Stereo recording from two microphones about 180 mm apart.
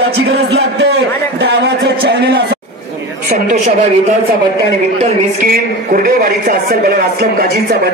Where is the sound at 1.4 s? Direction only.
65° right (ahead or behind).